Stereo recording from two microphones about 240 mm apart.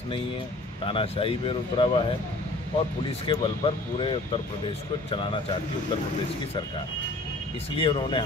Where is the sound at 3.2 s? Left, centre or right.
Left.